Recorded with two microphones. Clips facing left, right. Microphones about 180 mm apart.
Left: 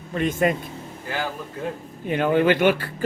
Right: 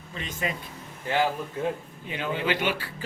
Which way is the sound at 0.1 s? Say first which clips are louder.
Left 11 dB; 55° left (ahead or behind).